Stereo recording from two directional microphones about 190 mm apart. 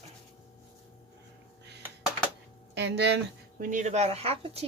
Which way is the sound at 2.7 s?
65° right (ahead or behind).